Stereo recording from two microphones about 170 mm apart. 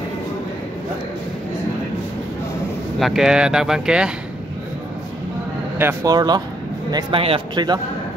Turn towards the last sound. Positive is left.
turn(degrees=-25)  # may be behind; listen again after turning